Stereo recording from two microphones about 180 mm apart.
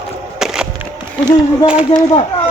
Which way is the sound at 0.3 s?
5° right (ahead or behind).